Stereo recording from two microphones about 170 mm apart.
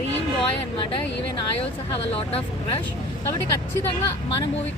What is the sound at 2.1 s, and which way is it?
Speech, 35° left (ahead or behind).